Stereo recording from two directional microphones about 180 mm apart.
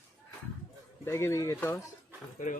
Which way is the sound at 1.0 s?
15° left (ahead or behind).